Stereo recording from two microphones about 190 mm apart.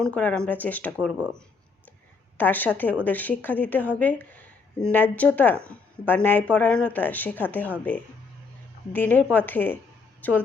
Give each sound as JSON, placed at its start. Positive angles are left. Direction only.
{"t": 0.0, "sound": "speech", "side_deg": 5}
{"t": 2.4, "sound": "speech", "side_deg": 10}
{"t": 8.9, "sound": "speech", "side_deg": 10}